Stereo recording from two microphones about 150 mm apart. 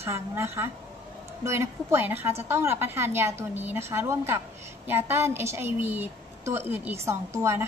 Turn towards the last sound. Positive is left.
turn(degrees=-15)  # may be behind; listen again after turning